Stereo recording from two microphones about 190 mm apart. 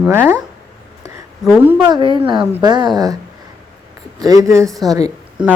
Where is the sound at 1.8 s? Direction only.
20° right (ahead or behind).